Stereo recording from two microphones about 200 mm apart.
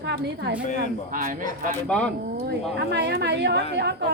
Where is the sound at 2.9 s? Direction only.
55° right (ahead or behind).